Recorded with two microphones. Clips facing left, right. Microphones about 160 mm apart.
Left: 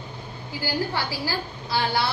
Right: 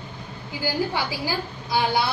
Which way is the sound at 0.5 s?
15° right (ahead or behind).